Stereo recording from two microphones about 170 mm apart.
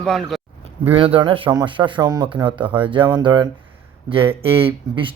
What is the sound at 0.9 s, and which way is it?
Speech, 35° right (ahead or behind).